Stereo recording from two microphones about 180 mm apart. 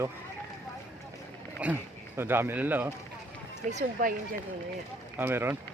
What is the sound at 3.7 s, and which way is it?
Speech, 40° right (ahead or behind).